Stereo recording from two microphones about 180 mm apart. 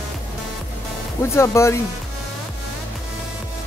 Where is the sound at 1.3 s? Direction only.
15° left (ahead or behind).